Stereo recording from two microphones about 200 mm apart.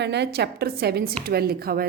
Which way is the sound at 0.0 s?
60° right (ahead or behind).